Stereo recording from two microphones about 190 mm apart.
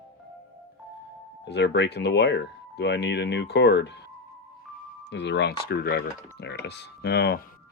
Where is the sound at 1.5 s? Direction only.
65° left (ahead or behind).